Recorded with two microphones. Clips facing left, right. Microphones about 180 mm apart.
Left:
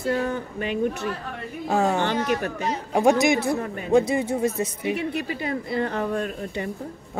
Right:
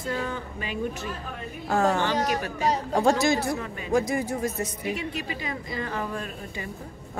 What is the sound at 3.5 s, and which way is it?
Speech, 50° left (ahead or behind).